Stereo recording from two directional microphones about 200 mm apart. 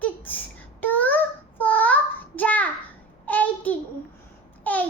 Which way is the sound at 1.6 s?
10° left (ahead or behind).